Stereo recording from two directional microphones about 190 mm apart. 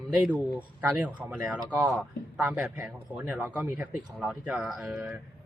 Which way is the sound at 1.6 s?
5° left (ahead or behind).